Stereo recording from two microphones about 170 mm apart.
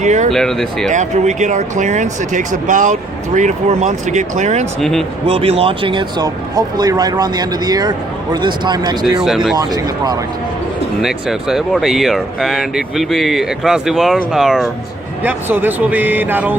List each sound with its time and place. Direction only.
0.0 s speech: 45° right (ahead or behind)
0.3 s speech: 5° left (ahead or behind)
0.9 s speech: 45° right (ahead or behind)
4.8 s speech: centre (ahead or behind)
5.2 s speech: 35° right (ahead or behind)
9.2 s speech: centre (ahead or behind)
9.6 s speech: 20° right (ahead or behind)
11.0 s speech: centre (ahead or behind)